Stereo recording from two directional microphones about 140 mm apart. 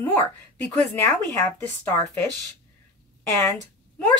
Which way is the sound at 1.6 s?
15° left (ahead or behind).